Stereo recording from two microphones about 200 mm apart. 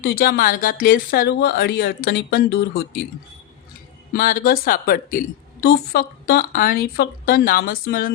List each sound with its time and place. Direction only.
0.0 s speech: 50° left (ahead or behind)
4.1 s speech: 45° left (ahead or behind)